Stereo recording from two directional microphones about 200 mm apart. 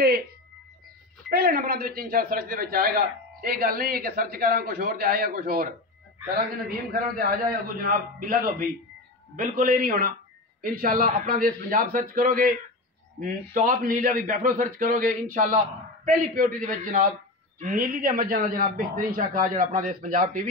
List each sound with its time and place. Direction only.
0.0 s music: 50° right (ahead or behind)
1.3 s a man's voice: 50° right (ahead or behind)